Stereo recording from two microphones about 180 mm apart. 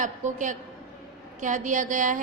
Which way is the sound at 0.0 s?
45° right (ahead or behind).